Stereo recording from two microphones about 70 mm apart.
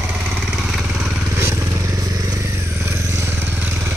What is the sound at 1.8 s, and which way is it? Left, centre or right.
Vehicle, right.